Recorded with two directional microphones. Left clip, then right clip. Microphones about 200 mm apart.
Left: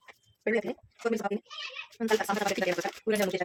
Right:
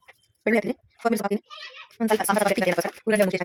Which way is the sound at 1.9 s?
40° right (ahead or behind).